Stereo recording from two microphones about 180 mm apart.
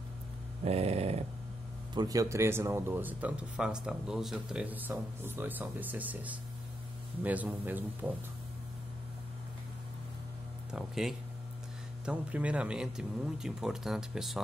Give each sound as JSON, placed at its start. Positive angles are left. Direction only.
{"t": 0.7, "sound": "dog", "side_deg": -35}
{"t": 2.0, "sound": "speech", "side_deg": -20}
{"t": 10.7, "sound": "speech", "side_deg": -5}